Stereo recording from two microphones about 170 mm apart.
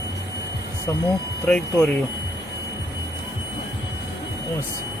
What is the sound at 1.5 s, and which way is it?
Speech, 10° left (ahead or behind).